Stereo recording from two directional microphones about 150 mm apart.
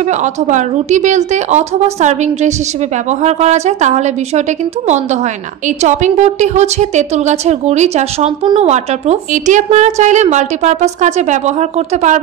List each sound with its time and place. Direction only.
0.2 s a woman's voice: 50° right (ahead or behind)